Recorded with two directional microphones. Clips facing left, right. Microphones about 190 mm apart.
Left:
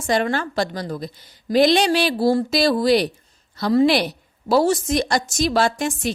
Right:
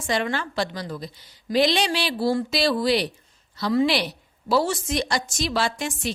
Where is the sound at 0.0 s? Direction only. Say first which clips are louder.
Left 5 dB; 45° left (ahead or behind).